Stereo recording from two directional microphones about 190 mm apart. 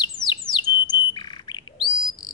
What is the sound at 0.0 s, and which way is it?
Bird, 25° left (ahead or behind).